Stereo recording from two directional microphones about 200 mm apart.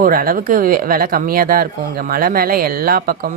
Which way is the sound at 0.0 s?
45° right (ahead or behind).